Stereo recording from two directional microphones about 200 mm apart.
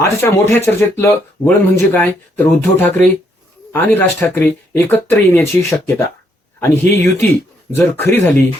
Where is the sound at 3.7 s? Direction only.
10° left (ahead or behind).